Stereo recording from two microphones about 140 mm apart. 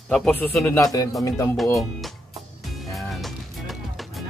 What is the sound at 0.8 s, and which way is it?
Speech, 25° left (ahead or behind).